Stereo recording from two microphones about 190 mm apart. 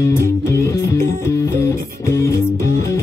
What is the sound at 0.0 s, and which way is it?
Music, 15° left (ahead or behind).